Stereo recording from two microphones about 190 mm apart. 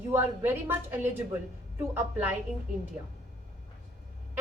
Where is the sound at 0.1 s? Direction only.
10° right (ahead or behind).